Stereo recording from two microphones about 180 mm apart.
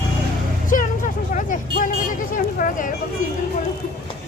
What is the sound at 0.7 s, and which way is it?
Music, 45° left (ahead or behind).